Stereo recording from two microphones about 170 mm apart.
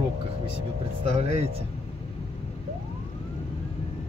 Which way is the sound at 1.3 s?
35° right (ahead or behind).